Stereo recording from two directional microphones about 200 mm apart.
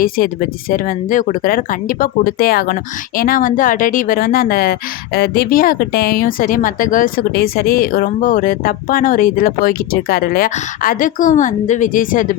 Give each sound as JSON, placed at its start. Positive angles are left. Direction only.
{"t": 0.0, "sound": "speech", "side_deg": 45}